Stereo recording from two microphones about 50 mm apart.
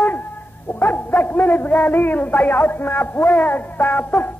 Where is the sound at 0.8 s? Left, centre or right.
Left.